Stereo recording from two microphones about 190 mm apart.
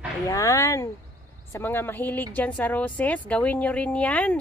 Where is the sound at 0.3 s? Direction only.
15° left (ahead or behind).